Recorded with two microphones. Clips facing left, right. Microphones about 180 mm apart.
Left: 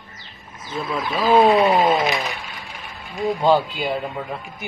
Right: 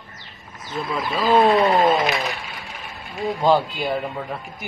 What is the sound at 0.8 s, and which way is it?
Speech, centre (ahead or behind).